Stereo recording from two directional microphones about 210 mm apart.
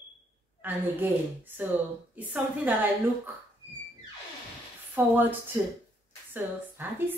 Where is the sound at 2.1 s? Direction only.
5° right (ahead or behind).